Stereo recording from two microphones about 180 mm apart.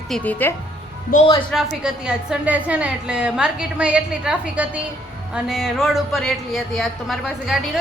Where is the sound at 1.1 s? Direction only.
55° left (ahead or behind).